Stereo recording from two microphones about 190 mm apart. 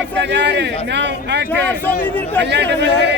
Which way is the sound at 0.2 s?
65° right (ahead or behind).